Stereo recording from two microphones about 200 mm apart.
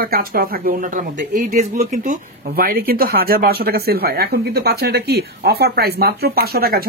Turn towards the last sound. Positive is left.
turn(degrees=-50)  # may be behind; listen again after turning